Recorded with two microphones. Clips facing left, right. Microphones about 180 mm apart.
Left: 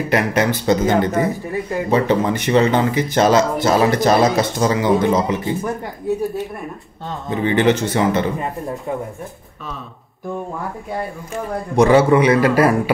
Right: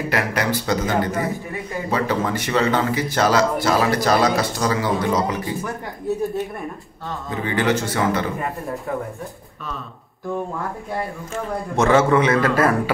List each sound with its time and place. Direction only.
0.1 s speech: 20° left (ahead or behind)
7.1 s speech: 20° left (ahead or behind)
11.7 s a man's voice: 15° left (ahead or behind)